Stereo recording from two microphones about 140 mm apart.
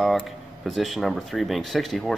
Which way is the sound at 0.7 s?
Centre (ahead or behind).